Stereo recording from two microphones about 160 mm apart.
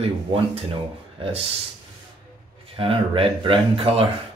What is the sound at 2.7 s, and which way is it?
Speech, 35° right (ahead or behind).